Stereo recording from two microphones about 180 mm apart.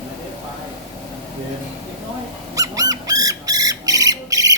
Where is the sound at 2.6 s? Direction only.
20° right (ahead or behind).